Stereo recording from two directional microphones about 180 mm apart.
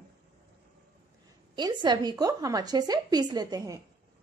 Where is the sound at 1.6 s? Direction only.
25° right (ahead or behind).